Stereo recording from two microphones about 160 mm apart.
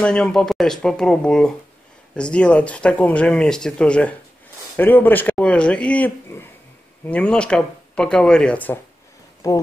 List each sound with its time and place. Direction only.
0.0 s speech: 5° left (ahead or behind)
9.4 s speech: 20° left (ahead or behind)